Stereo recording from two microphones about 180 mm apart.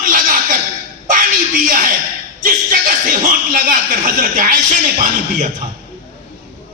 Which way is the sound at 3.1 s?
55° right (ahead or behind).